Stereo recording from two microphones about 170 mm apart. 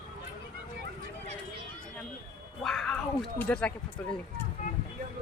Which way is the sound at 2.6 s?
Centre (ahead or behind).